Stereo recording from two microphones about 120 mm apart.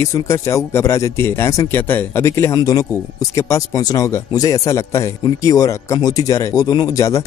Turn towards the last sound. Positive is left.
turn(degrees=25)  # may be behind; listen again after turning